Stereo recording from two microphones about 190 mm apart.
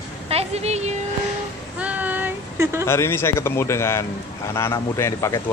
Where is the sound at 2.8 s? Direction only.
15° left (ahead or behind).